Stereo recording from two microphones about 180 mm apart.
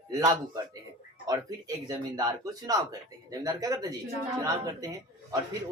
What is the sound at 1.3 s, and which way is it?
Speech, 20° right (ahead or behind).